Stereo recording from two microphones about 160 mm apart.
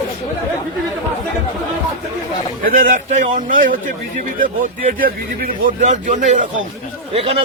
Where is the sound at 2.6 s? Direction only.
55° right (ahead or behind).